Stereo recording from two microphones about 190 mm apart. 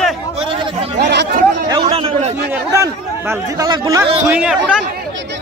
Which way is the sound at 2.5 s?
15° right (ahead or behind).